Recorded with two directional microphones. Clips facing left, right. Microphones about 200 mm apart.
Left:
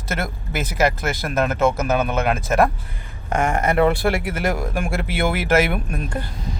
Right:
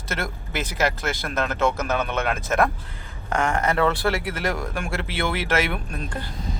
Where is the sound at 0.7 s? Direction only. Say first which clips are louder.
Left 5 dB; 10° left (ahead or behind).